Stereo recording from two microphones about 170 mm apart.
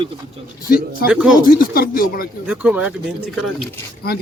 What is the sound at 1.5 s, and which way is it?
Speech, 60° left (ahead or behind).